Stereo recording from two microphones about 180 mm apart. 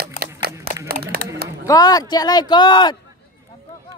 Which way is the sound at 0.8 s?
60° right (ahead or behind).